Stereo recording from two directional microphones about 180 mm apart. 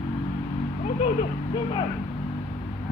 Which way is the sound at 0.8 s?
40° left (ahead or behind).